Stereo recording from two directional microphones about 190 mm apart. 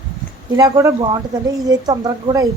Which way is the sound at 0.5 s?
15° right (ahead or behind).